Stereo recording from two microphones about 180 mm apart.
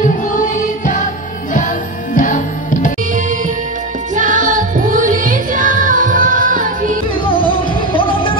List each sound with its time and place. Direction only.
2.1 s music: 45° left (ahead or behind)
3.2 s music: 45° right (ahead or behind)
7.2 s music: 30° left (ahead or behind)